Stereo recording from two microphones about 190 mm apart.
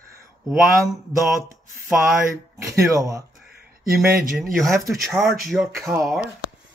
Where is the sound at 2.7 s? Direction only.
15° right (ahead or behind).